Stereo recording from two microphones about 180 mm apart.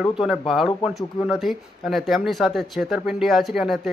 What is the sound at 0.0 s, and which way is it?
Speech, centre (ahead or behind).